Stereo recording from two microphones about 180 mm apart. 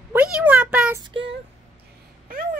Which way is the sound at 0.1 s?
10° right (ahead or behind).